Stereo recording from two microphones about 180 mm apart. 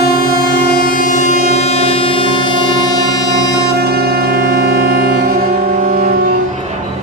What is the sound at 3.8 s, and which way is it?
Music, 65° right (ahead or behind).